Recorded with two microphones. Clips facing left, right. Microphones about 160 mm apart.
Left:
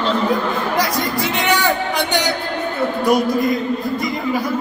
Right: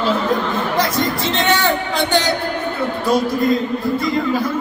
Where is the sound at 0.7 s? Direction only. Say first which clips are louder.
Right 1 dB; 15° left (ahead or behind).